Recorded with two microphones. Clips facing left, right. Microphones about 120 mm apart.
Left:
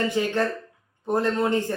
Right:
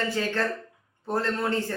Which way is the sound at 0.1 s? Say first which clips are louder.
Left 3 dB; 15° left (ahead or behind).